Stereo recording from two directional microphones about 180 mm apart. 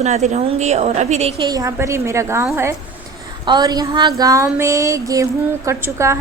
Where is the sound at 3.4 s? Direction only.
25° right (ahead or behind).